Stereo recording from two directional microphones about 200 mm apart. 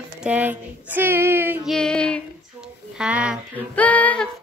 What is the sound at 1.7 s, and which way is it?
Speech, 5° left (ahead or behind).